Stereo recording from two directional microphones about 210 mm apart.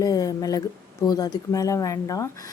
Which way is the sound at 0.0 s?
15° left (ahead or behind).